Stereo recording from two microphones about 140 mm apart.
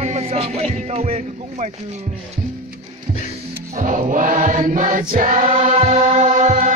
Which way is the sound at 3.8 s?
65° right (ahead or behind).